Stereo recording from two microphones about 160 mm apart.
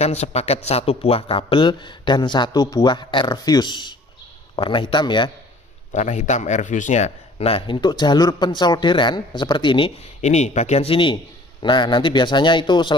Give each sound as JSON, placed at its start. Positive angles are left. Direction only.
{"t": 0.0, "sound": "a man's voice", "side_deg": 40}
{"t": 5.9, "sound": "a man's voice", "side_deg": 50}
{"t": 10.2, "sound": "speech", "side_deg": 45}